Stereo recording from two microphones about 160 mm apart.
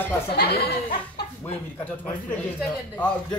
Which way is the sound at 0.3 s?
85° left.